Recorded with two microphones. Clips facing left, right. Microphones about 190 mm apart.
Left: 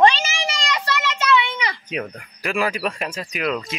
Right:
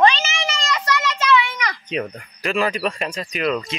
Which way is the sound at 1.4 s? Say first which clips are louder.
Even; 25° left (ahead or behind).